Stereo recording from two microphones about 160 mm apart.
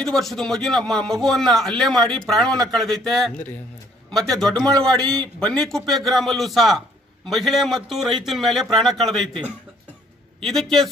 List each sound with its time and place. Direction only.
0.0 s speech: centre (ahead or behind)